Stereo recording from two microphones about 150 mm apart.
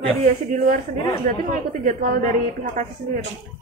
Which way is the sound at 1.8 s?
70° right (ahead or behind).